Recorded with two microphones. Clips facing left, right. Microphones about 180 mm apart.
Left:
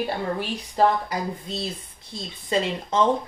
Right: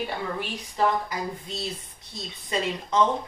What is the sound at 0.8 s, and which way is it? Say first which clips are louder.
Speech: left 4 dB; 30° left (ahead or behind).